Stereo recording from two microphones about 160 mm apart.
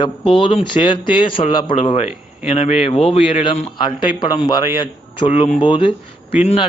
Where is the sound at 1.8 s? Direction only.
40° left (ahead or behind).